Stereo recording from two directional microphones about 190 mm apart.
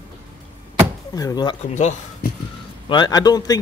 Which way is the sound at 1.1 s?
20° left (ahead or behind).